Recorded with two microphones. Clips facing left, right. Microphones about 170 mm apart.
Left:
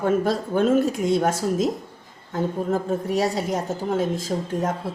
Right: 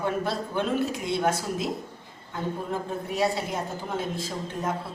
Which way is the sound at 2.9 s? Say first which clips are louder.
Left 4 dB; 45° left (ahead or behind).